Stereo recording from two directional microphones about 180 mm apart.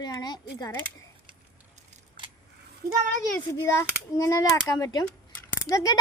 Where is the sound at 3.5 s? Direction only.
15° left (ahead or behind).